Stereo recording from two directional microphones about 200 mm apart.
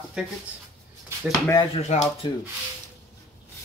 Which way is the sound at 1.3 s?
20° left (ahead or behind).